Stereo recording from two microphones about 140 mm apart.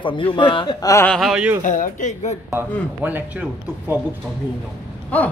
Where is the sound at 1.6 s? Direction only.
65° left (ahead or behind).